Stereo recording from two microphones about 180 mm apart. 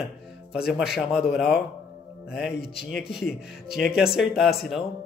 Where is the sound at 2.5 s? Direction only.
60° left (ahead or behind).